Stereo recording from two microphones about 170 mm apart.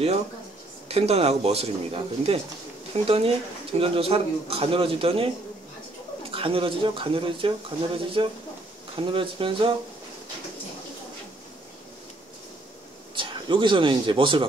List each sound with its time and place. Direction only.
0.8 s a man's voice: 35° right (ahead or behind)
6.3 s a man's voice: 30° right (ahead or behind)
13.1 s speech: 30° right (ahead or behind)